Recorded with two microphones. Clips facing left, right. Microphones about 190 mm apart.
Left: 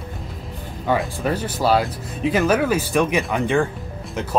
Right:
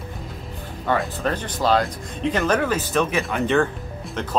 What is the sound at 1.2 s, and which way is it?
Speech, 10° left (ahead or behind).